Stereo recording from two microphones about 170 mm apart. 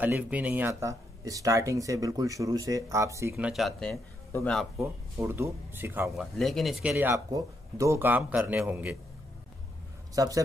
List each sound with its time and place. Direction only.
0.0 s speech: 10° right (ahead or behind)
5.1 s speech: 15° right (ahead or behind)
6.1 s speech: centre (ahead or behind)
10.1 s a man's voice: 20° right (ahead or behind)